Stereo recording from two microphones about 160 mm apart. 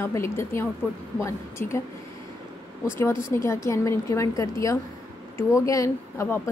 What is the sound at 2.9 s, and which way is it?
A woman's voice, 15° left (ahead or behind).